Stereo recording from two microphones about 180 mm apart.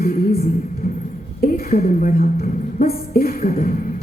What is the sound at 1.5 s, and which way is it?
A woman's voice, 55° left (ahead or behind).